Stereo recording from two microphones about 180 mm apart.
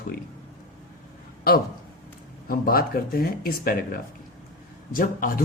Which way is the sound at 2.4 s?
55° left (ahead or behind).